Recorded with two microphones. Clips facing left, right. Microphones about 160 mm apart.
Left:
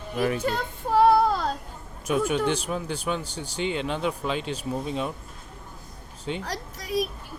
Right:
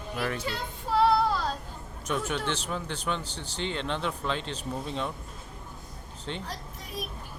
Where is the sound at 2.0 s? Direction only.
10° left (ahead or behind).